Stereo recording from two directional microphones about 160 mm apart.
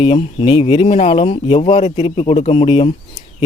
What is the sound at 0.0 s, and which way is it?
Speech, 30° left (ahead or behind).